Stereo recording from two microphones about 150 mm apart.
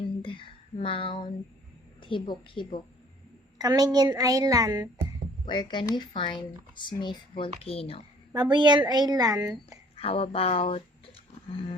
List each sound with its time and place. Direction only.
0.2 s a sound: 35° left (ahead or behind)
2.0 s speech: 35° left (ahead or behind)
3.6 s a woman's voice: 25° right (ahead or behind)
5.5 s speech: 30° left (ahead or behind)
8.3 s a woman's voice: 30° right (ahead or behind)
9.9 s speech: 40° left (ahead or behind)